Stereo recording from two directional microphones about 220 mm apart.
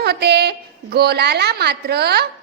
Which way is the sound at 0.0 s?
45° right (ahead or behind).